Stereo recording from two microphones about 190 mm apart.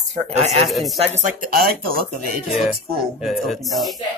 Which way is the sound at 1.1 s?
45° right (ahead or behind).